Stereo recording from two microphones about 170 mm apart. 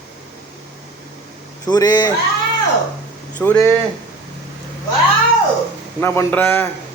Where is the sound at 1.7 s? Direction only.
20° left (ahead or behind).